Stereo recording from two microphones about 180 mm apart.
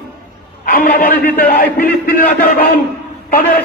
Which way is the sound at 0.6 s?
50° left (ahead or behind).